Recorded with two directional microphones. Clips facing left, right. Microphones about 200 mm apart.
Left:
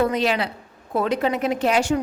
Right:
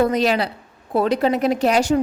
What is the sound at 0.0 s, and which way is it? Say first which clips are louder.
A woman's voice: right 3 dB; 40° right (ahead or behind).